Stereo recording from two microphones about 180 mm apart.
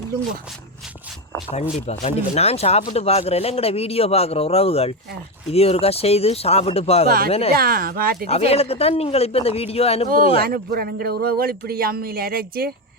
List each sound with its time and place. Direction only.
1.9 s speech: 35° left (ahead or behind)
7.5 s speech: 55° right (ahead or behind)
8.3 s speech: 35° left (ahead or behind)
10.4 s speech: 55° right (ahead or behind)